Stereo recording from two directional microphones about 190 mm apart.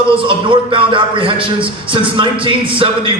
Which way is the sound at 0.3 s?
25° right (ahead or behind).